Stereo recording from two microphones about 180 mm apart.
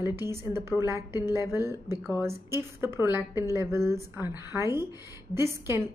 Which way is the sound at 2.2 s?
15° right (ahead or behind).